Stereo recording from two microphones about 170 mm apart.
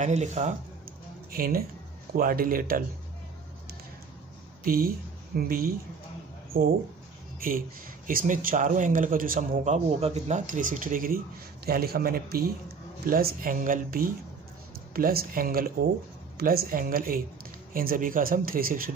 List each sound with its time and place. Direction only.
0.0 s a man's voice: 40° right (ahead or behind)
1.3 s speech: 60° right (ahead or behind)
4.6 s speech: 60° right (ahead or behind)
6.5 s a man's voice: 45° right (ahead or behind)
7.3 s a man's voice: 55° right (ahead or behind)